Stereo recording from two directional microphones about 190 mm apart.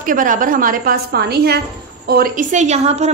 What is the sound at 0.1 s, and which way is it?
A woman's voice, 45° right (ahead or behind).